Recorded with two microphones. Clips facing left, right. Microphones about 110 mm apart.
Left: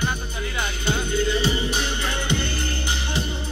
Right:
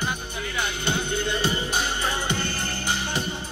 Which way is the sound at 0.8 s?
55° right (ahead or behind).